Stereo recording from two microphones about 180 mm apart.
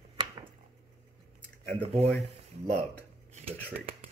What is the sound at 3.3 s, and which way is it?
Speech, 35° right (ahead or behind).